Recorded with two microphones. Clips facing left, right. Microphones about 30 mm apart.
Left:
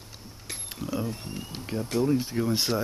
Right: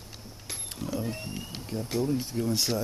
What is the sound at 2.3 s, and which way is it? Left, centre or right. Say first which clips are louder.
Speech: left 2 dB; left.